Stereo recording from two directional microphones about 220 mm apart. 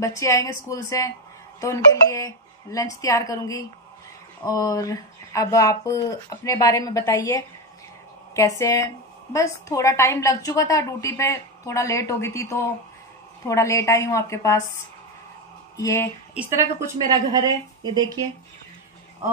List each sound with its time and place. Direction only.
0.0 s a woman's voice: 15° left (ahead or behind)
15.8 s a woman's voice: 15° left (ahead or behind)
16.3 s a woman's voice: 10° right (ahead or behind)